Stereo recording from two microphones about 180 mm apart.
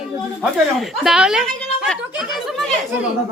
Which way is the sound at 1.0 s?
5° right (ahead or behind).